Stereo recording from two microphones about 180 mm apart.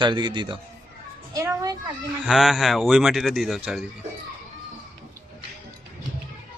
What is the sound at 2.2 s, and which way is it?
Speech, centre (ahead or behind).